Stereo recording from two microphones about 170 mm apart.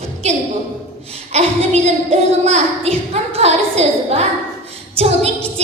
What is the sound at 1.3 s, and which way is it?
A woman's voice, 40° right (ahead or behind).